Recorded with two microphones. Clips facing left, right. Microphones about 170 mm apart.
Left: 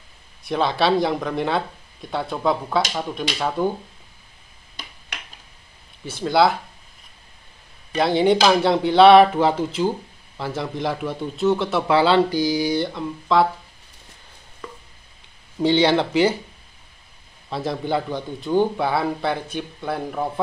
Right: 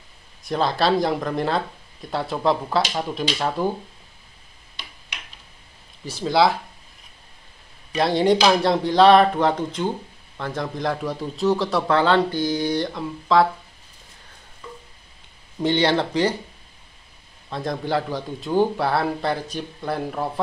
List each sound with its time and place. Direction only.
0.5 s speech: centre (ahead or behind)
6.0 s speech: centre (ahead or behind)
7.9 s speech: centre (ahead or behind)
14.6 s a sound: 90° left
15.6 s speech: 5° left (ahead or behind)
17.5 s speech: 5° left (ahead or behind)